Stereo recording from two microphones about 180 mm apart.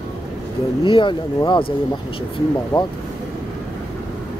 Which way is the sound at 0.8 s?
30° left (ahead or behind).